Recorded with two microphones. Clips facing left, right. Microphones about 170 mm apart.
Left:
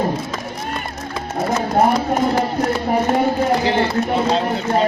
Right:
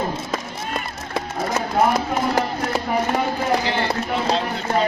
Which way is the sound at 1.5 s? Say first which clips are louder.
Left 4 dB; 45° left (ahead or behind).